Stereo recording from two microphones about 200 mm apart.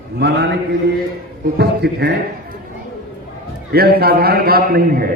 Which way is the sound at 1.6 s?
55° right (ahead or behind).